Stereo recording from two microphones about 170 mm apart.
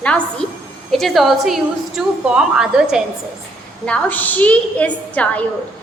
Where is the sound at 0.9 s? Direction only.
Centre (ahead or behind).